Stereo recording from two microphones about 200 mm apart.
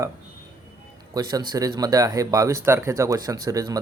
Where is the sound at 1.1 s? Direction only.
20° right (ahead or behind).